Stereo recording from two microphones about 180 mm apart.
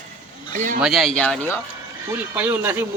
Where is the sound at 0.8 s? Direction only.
Centre (ahead or behind).